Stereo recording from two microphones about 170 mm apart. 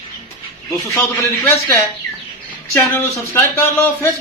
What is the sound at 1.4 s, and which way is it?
Speech, 15° left (ahead or behind).